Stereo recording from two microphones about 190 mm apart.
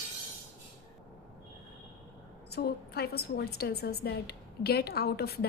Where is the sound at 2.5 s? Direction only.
55° left (ahead or behind).